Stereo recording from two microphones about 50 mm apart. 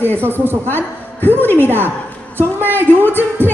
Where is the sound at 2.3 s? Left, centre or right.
Right.